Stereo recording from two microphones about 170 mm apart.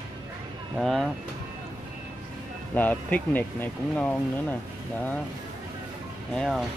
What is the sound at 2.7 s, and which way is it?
Speech, 10° left (ahead or behind).